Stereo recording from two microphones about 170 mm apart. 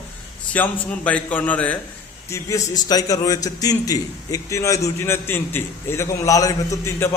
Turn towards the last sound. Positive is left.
turn(degrees=15)  # may be behind; listen again after turning